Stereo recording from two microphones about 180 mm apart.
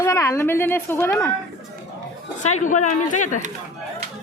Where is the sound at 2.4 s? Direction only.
40° left (ahead or behind).